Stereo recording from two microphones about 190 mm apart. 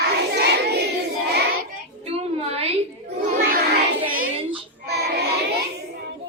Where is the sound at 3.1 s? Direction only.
60° right (ahead or behind).